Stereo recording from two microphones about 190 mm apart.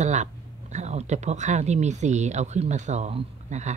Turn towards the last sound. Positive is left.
turn(degrees=-40)  # may be behind; listen again after turning